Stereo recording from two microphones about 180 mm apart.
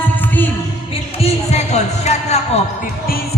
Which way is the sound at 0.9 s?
35° left (ahead or behind).